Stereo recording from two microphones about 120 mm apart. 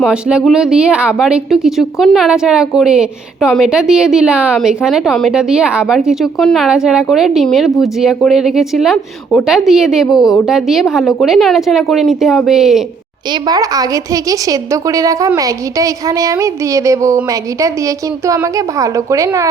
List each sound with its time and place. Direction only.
0.0 s a woman's voice: 5° right (ahead or behind)
13.5 s a woman's voice: 30° right (ahead or behind)